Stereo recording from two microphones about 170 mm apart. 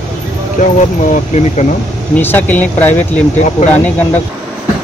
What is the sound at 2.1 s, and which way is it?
Speech, 10° left (ahead or behind).